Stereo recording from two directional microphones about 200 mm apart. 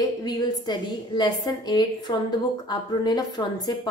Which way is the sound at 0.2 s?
20° left (ahead or behind).